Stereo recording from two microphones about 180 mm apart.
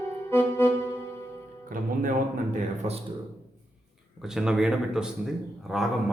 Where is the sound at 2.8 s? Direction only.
35° right (ahead or behind).